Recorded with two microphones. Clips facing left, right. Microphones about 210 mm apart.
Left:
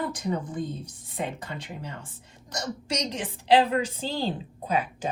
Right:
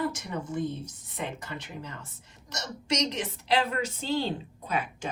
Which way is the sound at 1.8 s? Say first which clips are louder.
Left 3 dB; 30° left (ahead or behind).